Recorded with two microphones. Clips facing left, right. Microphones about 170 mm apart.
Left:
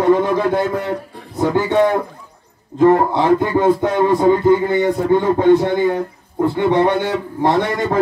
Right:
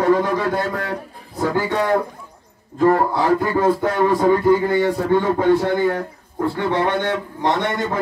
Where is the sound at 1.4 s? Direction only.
20° left (ahead or behind).